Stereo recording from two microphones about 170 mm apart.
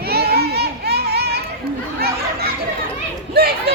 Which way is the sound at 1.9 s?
65° right (ahead or behind).